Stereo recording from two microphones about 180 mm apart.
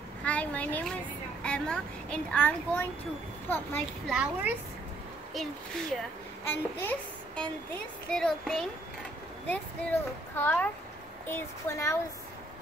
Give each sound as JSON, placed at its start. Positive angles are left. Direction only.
{"t": 0.2, "sound": "a sound", "side_deg": 5}
{"t": 1.4, "sound": "a child's voice", "side_deg": 5}
{"t": 4.1, "sound": "speech", "side_deg": -10}
{"t": 6.4, "sound": "a child's voice", "side_deg": 10}